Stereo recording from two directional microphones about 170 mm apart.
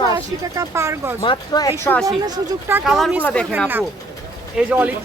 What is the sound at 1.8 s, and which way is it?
Speech, 5° left (ahead or behind).